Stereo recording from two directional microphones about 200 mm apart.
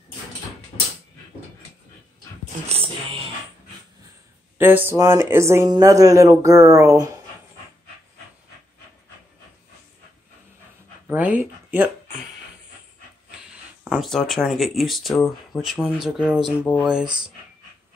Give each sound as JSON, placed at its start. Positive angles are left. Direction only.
{"t": 4.6, "sound": "speech", "side_deg": -10}
{"t": 11.1, "sound": "a sound", "side_deg": -5}
{"t": 13.8, "sound": "speech", "side_deg": 0}